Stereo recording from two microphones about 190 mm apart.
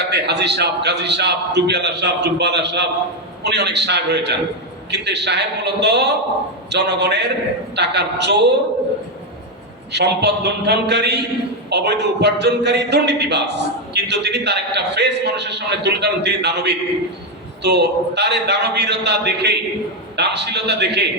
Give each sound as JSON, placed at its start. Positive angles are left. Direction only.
{"t": 0.0, "sound": "a man's voice", "side_deg": -60}
{"t": 9.9, "sound": "a man's voice", "side_deg": -60}